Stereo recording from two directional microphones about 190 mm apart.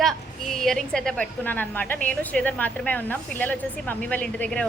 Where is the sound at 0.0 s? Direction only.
Centre (ahead or behind).